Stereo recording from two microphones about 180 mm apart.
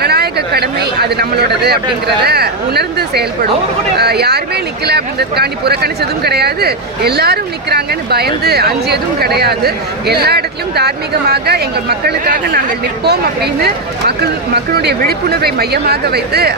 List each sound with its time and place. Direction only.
0.0 s speech: 65° right (ahead or behind)